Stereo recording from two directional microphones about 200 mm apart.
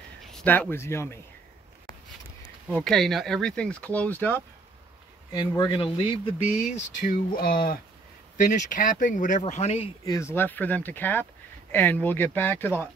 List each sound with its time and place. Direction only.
0.3 s speech: 5° left (ahead or behind)
2.7 s speech: centre (ahead or behind)
5.3 s speech: 25° left (ahead or behind)
10.0 s speech: 15° left (ahead or behind)